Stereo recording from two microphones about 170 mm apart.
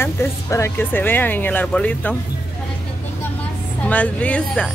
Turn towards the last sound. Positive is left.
turn(degrees=5)  # may be behind; listen again after turning